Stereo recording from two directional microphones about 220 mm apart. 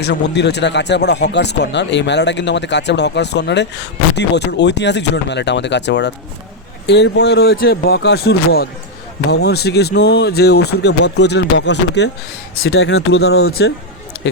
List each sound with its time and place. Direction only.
0.0 s speech: 50° left (ahead or behind)